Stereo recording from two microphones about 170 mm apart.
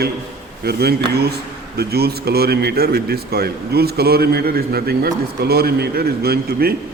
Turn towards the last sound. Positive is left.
turn(degrees=-65)  # may be behind; listen again after turning